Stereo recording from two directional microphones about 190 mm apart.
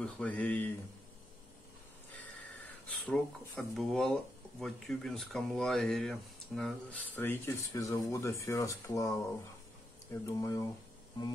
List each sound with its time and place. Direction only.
0.0 s speech: 5° left (ahead or behind)
2.4 s speech: 10° left (ahead or behind)
10.2 s speech: 15° left (ahead or behind)